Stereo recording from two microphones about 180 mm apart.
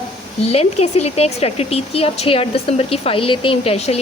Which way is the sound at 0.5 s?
35° left (ahead or behind).